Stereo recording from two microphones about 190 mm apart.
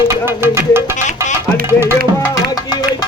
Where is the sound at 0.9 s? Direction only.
40° left (ahead or behind).